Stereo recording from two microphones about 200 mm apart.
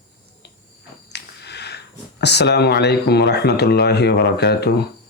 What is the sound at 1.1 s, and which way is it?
Speech, 55° left (ahead or behind).